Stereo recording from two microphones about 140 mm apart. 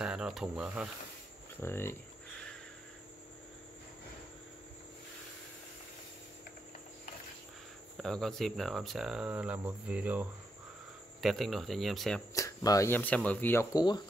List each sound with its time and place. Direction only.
0.0 s speech: 5° right (ahead or behind)
1.6 s speech: 15° left (ahead or behind)
8.0 s speech: 5° left (ahead or behind)
11.1 s speech: centre (ahead or behind)
12.4 s speech: 25° left (ahead or behind)
13.7 s speech: 30° left (ahead or behind)